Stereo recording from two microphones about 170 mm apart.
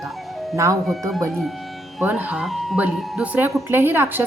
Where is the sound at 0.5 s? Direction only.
15° right (ahead or behind).